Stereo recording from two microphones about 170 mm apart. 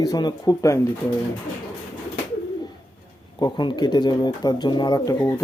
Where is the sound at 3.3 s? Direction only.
25° left (ahead or behind).